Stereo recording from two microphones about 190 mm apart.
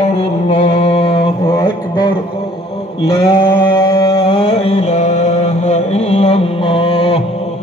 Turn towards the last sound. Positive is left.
turn(degrees=30)  # may be behind; listen again after turning